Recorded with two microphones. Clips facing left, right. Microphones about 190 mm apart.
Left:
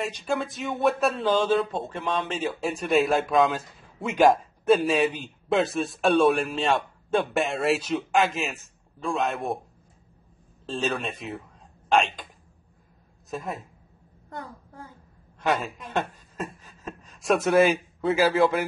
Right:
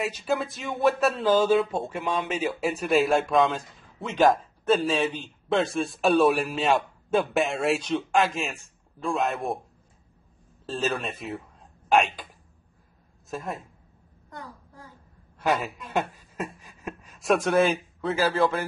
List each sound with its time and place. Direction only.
0.0 s speech: 5° right (ahead or behind)
4.1 s speech: 10° left (ahead or behind)
10.7 s speech: centre (ahead or behind)
13.3 s speech: centre (ahead or behind)
15.3 s a sound: 5° right (ahead or behind)
18.1 s a man's voice: 15° left (ahead or behind)